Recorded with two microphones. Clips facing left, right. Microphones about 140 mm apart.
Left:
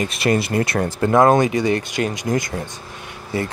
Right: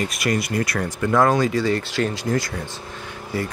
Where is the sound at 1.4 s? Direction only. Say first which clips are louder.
Left 2 dB; 20° left (ahead or behind).